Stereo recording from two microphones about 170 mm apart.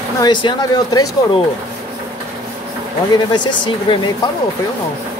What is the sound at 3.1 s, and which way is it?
Speech, 25° left (ahead or behind).